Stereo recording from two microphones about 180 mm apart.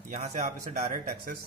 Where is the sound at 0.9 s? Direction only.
55° right (ahead or behind).